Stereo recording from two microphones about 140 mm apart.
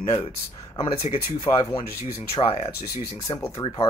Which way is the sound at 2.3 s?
45° left (ahead or behind).